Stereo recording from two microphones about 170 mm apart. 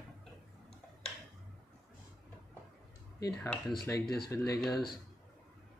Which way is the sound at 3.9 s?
15° left (ahead or behind).